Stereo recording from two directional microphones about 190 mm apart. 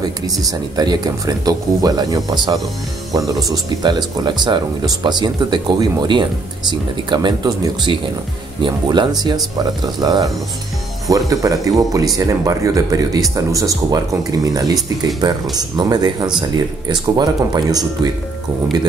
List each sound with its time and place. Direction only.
0.5 s speech: 20° right (ahead or behind)